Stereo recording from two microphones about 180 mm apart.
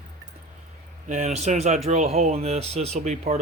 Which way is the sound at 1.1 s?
40° right (ahead or behind).